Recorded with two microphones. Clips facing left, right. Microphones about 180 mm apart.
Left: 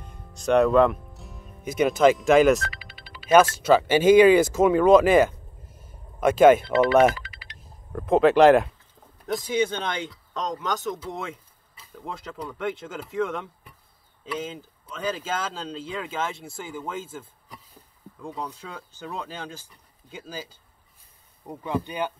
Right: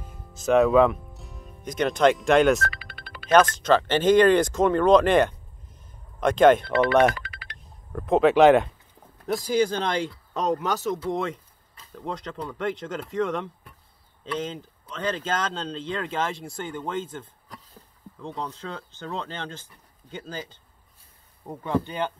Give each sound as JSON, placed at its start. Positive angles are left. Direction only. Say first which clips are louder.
{"t": 0.0, "sound": "music", "louder": "even", "side_deg": -5}
{"t": 2.8, "sound": "music", "louder": "right 2 dB", "side_deg": -55}
{"t": 3.3, "sound": "speech", "louder": "left 1 dB", "side_deg": 5}
{"t": 5.9, "sound": "a sound", "louder": "left 2 dB", "side_deg": 5}
{"t": 6.8, "sound": "speech", "louder": "left 1 dB", "side_deg": 5}
{"t": 7.2, "sound": "a sound", "louder": "right 2 dB", "side_deg": -60}
{"t": 7.5, "sound": "speech", "louder": "left 1 dB", "side_deg": 0}